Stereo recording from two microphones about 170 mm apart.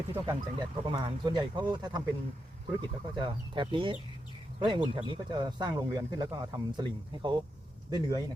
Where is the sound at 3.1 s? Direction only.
30° right (ahead or behind).